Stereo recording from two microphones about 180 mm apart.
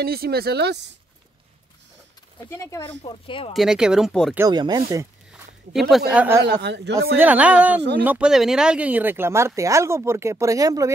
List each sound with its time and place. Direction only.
0.0 s speech: 60° right (ahead or behind)
2.4 s speech: 15° left (ahead or behind)
3.0 s speech: 30° left (ahead or behind)
3.5 s speech: 5° right (ahead or behind)
4.4 s speech: 25° right (ahead or behind)
5.7 s speech: centre (ahead or behind)
6.4 s speech: 70° right (ahead or behind)
7.0 s speech: 10° right (ahead or behind)